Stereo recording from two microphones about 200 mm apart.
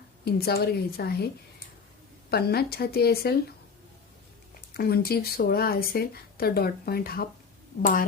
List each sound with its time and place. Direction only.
0.3 s speech: 50° left (ahead or behind)
2.3 s speech: 50° left (ahead or behind)
4.8 s speech: 50° left (ahead or behind)